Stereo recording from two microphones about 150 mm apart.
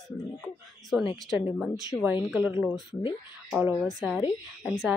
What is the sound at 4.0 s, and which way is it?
Speech, 10° right (ahead or behind).